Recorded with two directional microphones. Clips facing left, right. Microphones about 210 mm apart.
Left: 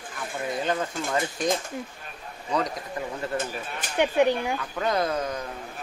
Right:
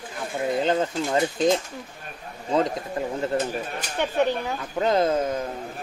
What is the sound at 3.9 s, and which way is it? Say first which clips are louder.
Speech: left 2 dB; 15° left (ahead or behind).